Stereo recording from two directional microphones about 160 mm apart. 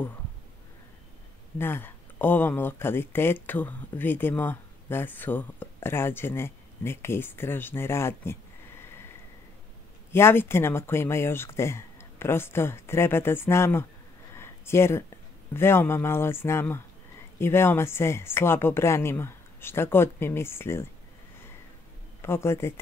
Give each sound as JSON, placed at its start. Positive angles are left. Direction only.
{"t": 1.6, "sound": "speech", "side_deg": 15}
{"t": 10.1, "sound": "speech", "side_deg": 15}
{"t": 14.3, "sound": "a sound", "side_deg": 15}
{"t": 15.5, "sound": "speech", "side_deg": 15}
{"t": 22.2, "sound": "speech", "side_deg": 15}